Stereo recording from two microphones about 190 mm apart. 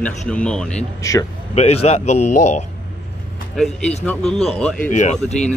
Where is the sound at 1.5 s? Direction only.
35° left (ahead or behind).